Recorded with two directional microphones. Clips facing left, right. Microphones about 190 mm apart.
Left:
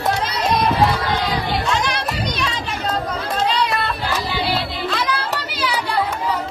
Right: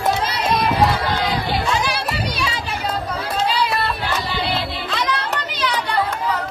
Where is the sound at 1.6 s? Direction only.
5° right (ahead or behind).